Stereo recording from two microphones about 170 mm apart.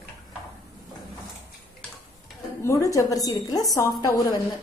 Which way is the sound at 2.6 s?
15° left (ahead or behind).